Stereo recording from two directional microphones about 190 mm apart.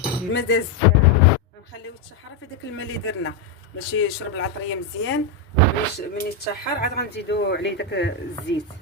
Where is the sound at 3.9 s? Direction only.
90° left.